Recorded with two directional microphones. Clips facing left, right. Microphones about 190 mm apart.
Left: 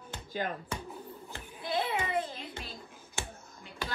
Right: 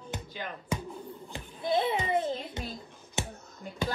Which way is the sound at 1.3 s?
20° right (ahead or behind).